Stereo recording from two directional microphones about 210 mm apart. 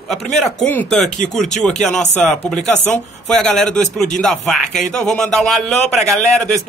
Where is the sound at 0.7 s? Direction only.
5° left (ahead or behind).